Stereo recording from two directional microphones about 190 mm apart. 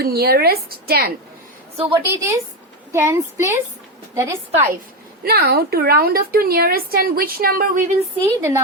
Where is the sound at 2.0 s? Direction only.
15° right (ahead or behind).